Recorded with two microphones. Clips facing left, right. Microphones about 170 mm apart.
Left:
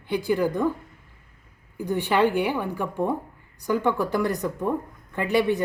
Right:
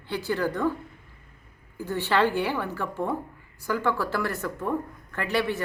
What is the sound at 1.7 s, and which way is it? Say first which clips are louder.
Speech: left 2 dB; 15° left (ahead or behind).